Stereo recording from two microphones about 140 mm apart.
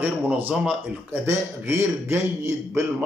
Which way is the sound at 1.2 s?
20° right (ahead or behind).